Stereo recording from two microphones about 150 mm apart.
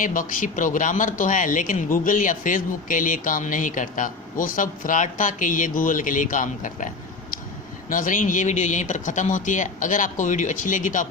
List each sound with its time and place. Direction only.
0.0 s speech: 65° left (ahead or behind)
7.9 s speech: 65° left (ahead or behind)